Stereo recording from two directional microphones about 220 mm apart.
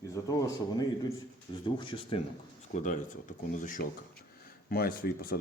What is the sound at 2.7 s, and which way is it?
Speech, 35° left (ahead or behind).